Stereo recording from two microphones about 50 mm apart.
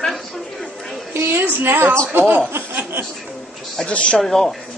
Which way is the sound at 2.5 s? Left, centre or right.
Right.